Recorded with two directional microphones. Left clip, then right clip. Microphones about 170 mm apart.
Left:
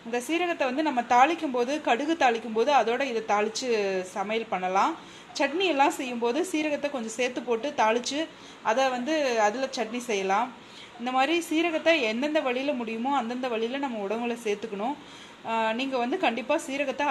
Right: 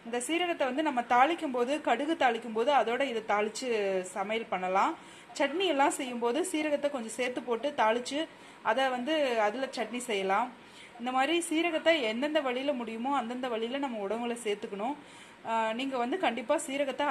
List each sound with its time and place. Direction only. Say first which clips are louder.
0.1 s a woman's voice: left 3 dB; 5° right (ahead or behind)